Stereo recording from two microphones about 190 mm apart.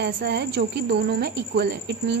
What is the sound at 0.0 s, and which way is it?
Speech, 60° right (ahead or behind).